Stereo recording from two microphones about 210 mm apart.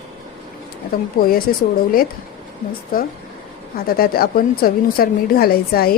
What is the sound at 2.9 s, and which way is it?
Speech, 45° left (ahead or behind).